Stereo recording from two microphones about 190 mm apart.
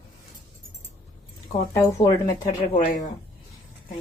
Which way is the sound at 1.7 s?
15° left (ahead or behind).